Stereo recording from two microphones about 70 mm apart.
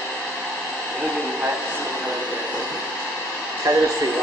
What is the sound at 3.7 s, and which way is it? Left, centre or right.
Speech, right.